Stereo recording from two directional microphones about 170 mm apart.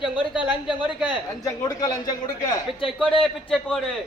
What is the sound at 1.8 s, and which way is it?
Speech, 20° left (ahead or behind).